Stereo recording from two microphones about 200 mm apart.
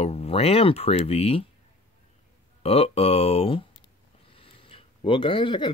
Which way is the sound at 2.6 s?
30° left (ahead or behind).